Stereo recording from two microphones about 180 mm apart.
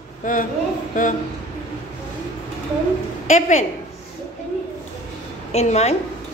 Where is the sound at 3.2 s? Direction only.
45° left (ahead or behind).